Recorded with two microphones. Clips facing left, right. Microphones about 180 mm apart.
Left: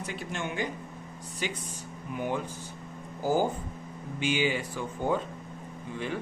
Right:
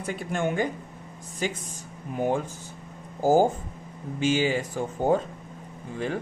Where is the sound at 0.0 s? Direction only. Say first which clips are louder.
Right 7 dB; 50° right (ahead or behind).